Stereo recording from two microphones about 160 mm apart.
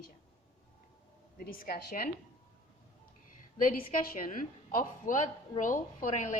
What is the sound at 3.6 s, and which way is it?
A woman's voice, 60° left (ahead or behind).